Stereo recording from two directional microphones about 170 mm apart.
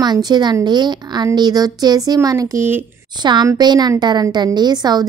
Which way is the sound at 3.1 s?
25° right (ahead or behind).